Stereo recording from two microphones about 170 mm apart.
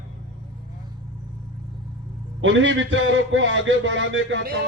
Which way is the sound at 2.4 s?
90° right.